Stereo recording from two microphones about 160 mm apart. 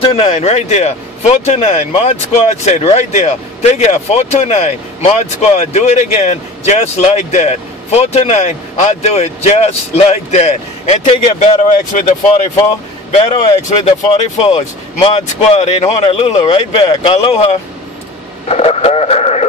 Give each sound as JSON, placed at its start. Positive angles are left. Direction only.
{"t": 0.1, "sound": "speech", "side_deg": 40}